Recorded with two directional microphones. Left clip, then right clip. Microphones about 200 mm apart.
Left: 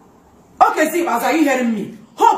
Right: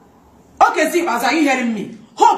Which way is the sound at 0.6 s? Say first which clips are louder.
Even; 15° left (ahead or behind).